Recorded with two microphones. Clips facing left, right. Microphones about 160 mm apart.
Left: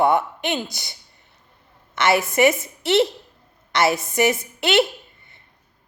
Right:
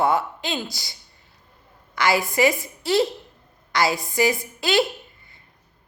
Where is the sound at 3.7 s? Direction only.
25° left (ahead or behind).